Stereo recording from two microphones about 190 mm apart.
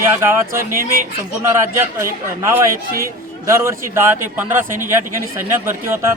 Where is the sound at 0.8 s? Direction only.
50° right (ahead or behind).